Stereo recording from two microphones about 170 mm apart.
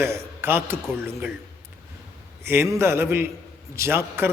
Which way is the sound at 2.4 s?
15° right (ahead or behind).